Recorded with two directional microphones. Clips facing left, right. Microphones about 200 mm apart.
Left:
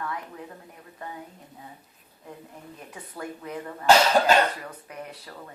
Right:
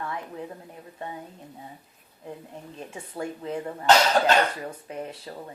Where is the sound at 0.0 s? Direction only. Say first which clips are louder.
Right 1 dB; 25° right (ahead or behind).